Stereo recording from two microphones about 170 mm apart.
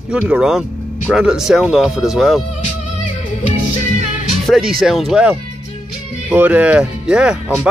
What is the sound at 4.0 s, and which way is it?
Music, 45° left (ahead or behind).